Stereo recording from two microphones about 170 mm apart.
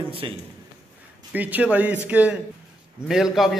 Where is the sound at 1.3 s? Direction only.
10° right (ahead or behind).